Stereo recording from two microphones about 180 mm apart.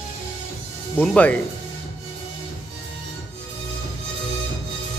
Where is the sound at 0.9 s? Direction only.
10° left (ahead or behind).